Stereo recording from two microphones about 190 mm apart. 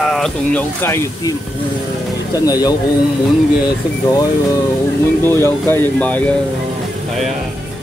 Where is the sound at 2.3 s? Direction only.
20° left (ahead or behind).